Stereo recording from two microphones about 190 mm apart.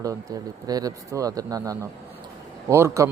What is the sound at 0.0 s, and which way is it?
Speech, 15° right (ahead or behind).